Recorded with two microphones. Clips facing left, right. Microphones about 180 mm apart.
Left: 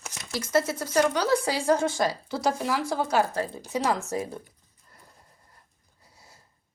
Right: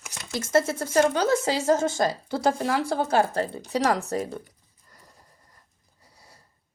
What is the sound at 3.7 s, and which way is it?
Speech, 70° right (ahead or behind).